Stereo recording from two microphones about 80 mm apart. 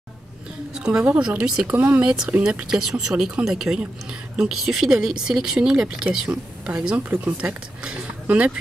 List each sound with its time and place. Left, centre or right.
0.7 s speech: centre
1.1 s speech: centre